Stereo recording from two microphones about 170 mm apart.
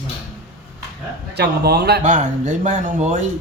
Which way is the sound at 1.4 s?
70° right (ahead or behind).